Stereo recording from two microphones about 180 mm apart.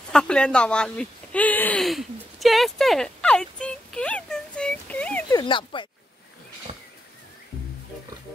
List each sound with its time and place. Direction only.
0.1 s speech: 5° left (ahead or behind)
5.3 s speech: 25° left (ahead or behind)
6.7 s a sound: 35° right (ahead or behind)